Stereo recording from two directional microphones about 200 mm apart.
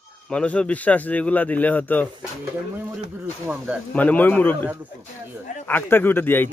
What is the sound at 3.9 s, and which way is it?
A man's voice, 10° left (ahead or behind).